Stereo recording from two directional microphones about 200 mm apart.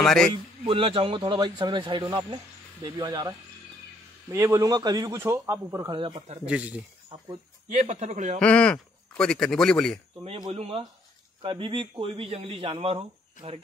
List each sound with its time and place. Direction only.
0.0 s speech: 5° left (ahead or behind)
0.7 s a man's voice: 25° right (ahead or behind)
6.4 s speech: 5° right (ahead or behind)
7.7 s a man's voice: 35° right (ahead or behind)
8.4 s speech: 5° left (ahead or behind)
10.2 s a man's voice: 30° right (ahead or behind)